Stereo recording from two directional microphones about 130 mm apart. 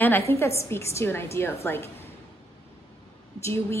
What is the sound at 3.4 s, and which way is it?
Speech, 20° left (ahead or behind).